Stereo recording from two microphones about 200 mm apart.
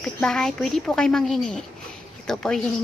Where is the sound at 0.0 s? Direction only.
5° left (ahead or behind).